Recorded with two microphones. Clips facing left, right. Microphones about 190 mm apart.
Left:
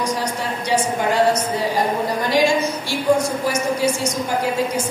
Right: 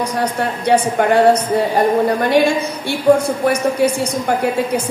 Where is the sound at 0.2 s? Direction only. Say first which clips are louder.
Right 6 dB; 60° right (ahead or behind).